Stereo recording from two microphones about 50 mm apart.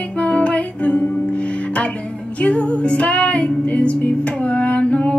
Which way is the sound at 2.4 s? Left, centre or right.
Left.